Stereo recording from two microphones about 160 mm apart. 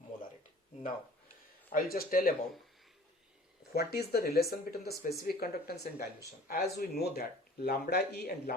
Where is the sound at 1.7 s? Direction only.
65° left (ahead or behind).